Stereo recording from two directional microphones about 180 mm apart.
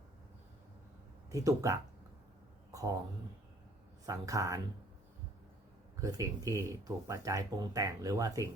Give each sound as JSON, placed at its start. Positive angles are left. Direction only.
{"t": 1.3, "sound": "speech", "side_deg": -20}
{"t": 4.0, "sound": "speech", "side_deg": -20}
{"t": 6.0, "sound": "speech", "side_deg": -20}